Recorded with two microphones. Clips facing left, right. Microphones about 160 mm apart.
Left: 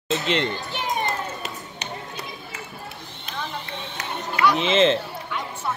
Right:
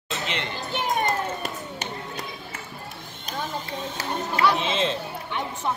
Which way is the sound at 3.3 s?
40° right (ahead or behind).